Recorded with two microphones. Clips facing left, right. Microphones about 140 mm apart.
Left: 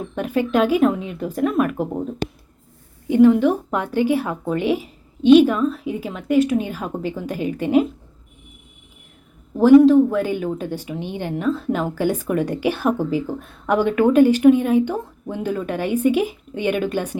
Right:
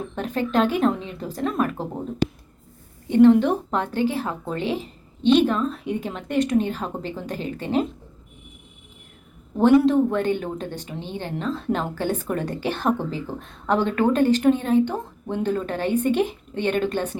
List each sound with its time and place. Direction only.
0.2 s a woman's voice: 10° left (ahead or behind)
3.1 s a woman's voice: 5° left (ahead or behind)
9.6 s a woman's voice: centre (ahead or behind)